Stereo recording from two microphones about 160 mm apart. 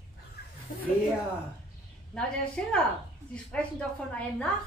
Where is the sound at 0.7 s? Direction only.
60° left (ahead or behind).